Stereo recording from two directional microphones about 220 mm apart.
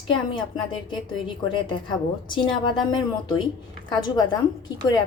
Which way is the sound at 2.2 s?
20° left (ahead or behind).